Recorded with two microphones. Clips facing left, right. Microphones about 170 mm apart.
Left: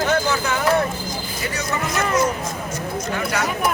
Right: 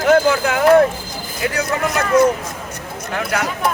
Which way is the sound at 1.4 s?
60° right (ahead or behind).